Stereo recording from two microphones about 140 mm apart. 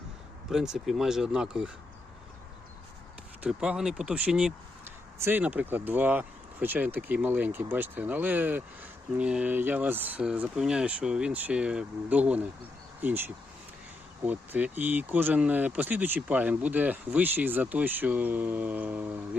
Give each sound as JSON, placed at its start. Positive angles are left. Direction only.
{"t": 0.5, "sound": "speech", "side_deg": -5}
{"t": 3.4, "sound": "speech", "side_deg": -5}
{"t": 5.1, "sound": "speech", "side_deg": -15}